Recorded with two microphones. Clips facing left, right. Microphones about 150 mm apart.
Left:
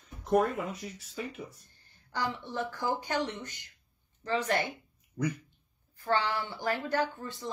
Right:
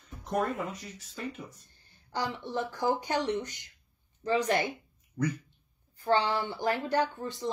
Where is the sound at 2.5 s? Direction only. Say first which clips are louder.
Right 6 dB; 15° right (ahead or behind).